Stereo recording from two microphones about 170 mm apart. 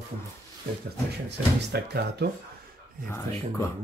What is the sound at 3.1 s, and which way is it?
Speech, 15° left (ahead or behind).